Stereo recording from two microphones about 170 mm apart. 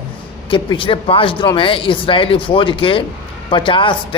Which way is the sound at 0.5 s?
30° left (ahead or behind).